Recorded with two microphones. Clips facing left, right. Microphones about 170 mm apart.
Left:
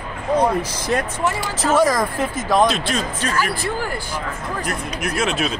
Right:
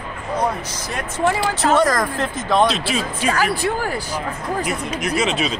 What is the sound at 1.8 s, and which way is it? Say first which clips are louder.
Speech: left 1 dB; 5° left (ahead or behind).